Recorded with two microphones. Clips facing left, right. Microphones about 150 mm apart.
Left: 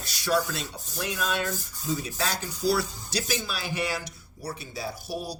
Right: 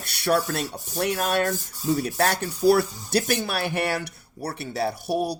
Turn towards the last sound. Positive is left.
turn(degrees=-60)  # may be behind; listen again after turning